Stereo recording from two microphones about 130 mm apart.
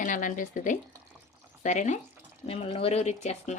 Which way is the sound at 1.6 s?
70° left (ahead or behind).